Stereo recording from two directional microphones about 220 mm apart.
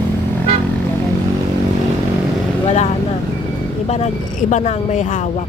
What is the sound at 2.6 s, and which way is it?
Vehicle, 30° left (ahead or behind).